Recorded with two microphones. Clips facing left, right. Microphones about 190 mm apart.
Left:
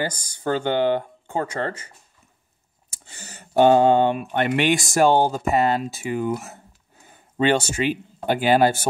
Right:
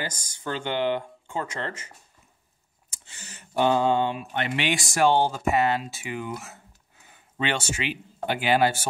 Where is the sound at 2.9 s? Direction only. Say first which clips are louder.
Left 4 dB; 40° left (ahead or behind).